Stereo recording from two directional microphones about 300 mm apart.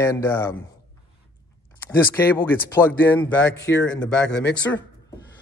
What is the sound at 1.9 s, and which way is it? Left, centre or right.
Speech, centre.